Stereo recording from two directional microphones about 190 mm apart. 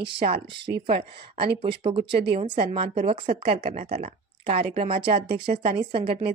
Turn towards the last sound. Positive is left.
turn(degrees=-30)  # may be behind; listen again after turning